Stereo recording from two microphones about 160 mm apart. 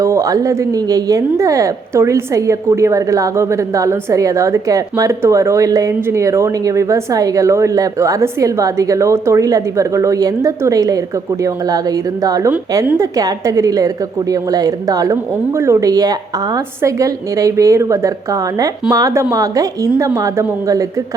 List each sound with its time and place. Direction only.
0.0 s a woman's voice: 20° right (ahead or behind)